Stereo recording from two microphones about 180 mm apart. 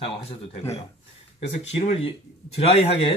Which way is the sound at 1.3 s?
35° left (ahead or behind).